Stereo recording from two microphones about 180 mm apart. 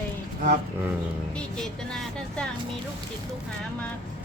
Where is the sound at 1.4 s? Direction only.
5° left (ahead or behind).